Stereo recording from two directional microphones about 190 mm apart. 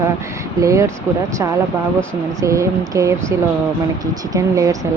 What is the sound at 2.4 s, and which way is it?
A woman's voice, 15° right (ahead or behind).